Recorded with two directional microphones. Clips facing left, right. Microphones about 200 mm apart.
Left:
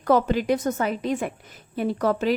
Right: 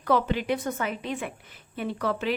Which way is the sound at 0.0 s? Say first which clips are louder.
Left 4 dB; 45° left (ahead or behind).